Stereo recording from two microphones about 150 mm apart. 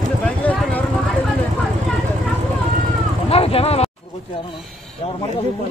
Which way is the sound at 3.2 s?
40° left (ahead or behind).